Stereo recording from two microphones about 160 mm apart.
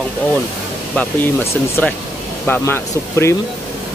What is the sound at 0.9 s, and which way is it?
Speech, 10° left (ahead or behind).